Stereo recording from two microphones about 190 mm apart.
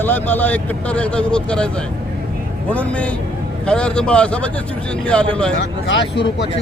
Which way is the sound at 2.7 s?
5° left (ahead or behind).